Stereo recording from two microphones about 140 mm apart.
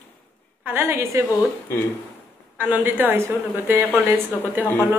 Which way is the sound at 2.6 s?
15° right (ahead or behind).